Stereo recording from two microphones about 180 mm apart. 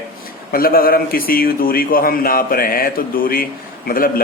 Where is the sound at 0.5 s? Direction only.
55° left (ahead or behind).